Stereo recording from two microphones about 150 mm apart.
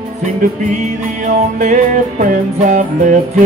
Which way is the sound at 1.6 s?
55° right (ahead or behind).